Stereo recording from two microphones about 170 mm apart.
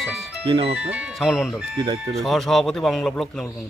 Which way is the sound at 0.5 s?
35° right (ahead or behind).